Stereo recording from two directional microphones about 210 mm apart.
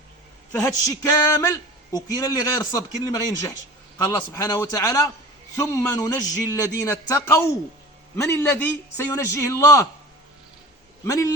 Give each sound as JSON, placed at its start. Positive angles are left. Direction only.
{"t": 0.6, "sound": "a man's voice", "side_deg": 15}
{"t": 11.0, "sound": "speech", "side_deg": 15}